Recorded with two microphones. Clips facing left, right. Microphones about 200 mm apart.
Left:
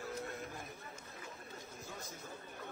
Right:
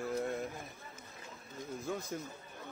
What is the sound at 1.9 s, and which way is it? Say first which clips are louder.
Speech: right 12 dB; 60° right (ahead or behind).